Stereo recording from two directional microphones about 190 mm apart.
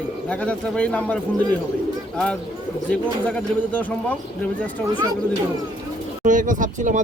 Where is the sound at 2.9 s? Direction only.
5° left (ahead or behind).